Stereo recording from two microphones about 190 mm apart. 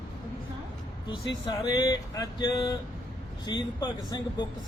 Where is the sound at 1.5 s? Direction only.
20° left (ahead or behind).